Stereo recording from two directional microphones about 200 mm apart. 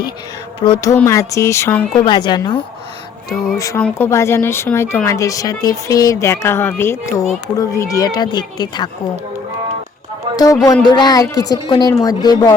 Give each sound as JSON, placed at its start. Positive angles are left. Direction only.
{"t": 0.6, "sound": "speech", "side_deg": 20}
{"t": 10.3, "sound": "a man's voice", "side_deg": 20}